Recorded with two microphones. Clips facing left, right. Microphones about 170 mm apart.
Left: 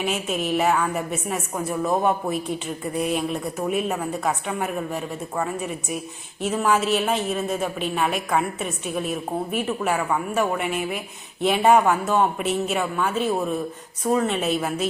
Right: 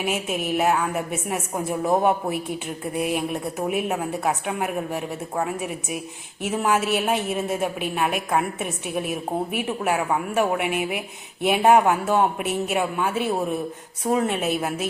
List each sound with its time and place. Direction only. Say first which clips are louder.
0.0 s a woman's voice: even; 10° right (ahead or behind)